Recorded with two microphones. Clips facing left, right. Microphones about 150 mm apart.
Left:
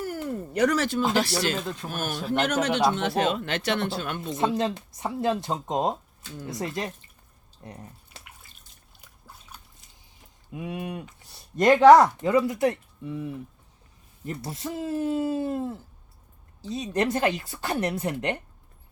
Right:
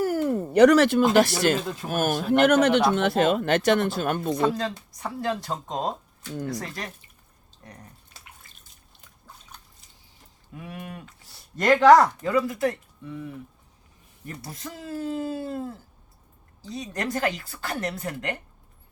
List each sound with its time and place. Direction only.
0.0 s a sound: 80° right
0.6 s speech: 70° right (ahead or behind)
1.9 s speech: 50° right (ahead or behind)
4.4 s speech: 25° left (ahead or behind)
7.6 s a sound: 25° left (ahead or behind)
8.4 s drip: centre (ahead or behind)
10.5 s speech: 20° left (ahead or behind)